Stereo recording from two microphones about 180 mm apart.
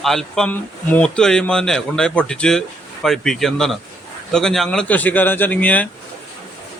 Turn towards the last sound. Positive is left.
turn(degrees=10)  # may be behind; listen again after turning